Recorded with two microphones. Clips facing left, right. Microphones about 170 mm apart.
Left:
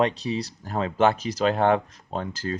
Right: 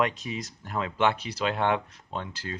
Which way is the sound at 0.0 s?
35° left (ahead or behind).